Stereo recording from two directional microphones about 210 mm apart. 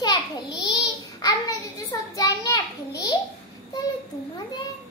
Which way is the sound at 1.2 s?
15° left (ahead or behind).